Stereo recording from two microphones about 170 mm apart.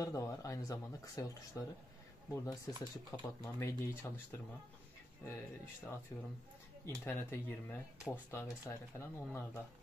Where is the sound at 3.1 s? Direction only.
10° left (ahead or behind).